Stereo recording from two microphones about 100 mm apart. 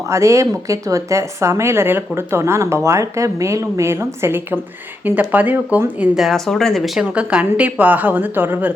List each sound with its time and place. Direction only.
0.0 s speech: 30° right (ahead or behind)
6.1 s speech: centre (ahead or behind); by 8.7 s 20° right (ahead or behind)